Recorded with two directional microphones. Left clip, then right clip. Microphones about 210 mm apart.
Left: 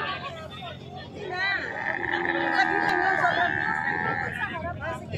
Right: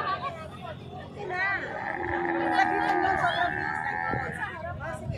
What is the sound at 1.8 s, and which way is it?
Roaring cats, 30° right (ahead or behind).